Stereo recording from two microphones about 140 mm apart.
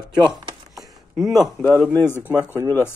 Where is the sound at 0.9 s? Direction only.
Centre (ahead or behind).